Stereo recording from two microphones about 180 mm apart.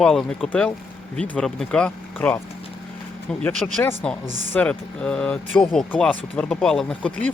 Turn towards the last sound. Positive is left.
turn(degrees=5)  # may be behind; listen again after turning